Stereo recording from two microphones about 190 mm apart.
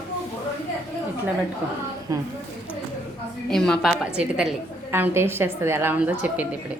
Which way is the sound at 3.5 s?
Centre (ahead or behind).